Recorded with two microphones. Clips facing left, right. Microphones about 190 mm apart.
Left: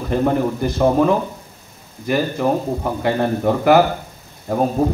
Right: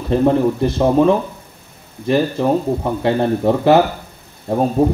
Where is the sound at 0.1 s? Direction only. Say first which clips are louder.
Right 4 dB; 25° right (ahead or behind).